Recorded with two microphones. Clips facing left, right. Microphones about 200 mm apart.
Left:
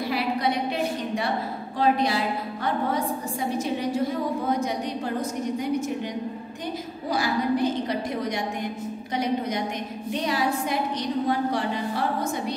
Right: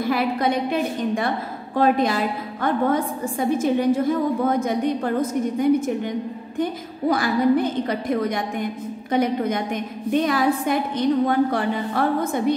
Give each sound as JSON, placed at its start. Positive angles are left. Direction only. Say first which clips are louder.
{"t": 0.0, "sound": "a woman's voice", "louder": "right 4 dB", "side_deg": -50}